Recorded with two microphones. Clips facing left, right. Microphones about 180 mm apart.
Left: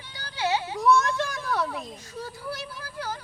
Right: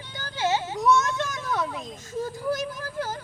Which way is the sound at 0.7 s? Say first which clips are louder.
Left 1 dB; 20° right (ahead or behind).